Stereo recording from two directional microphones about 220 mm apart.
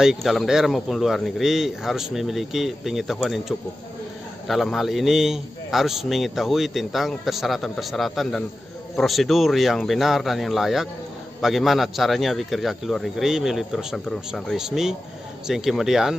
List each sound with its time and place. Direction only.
0.0 s a man's voice: centre (ahead or behind)